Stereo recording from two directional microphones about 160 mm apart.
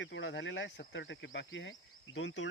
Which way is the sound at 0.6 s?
90° left.